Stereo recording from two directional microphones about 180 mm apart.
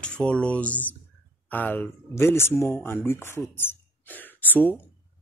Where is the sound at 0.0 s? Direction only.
5° left (ahead or behind).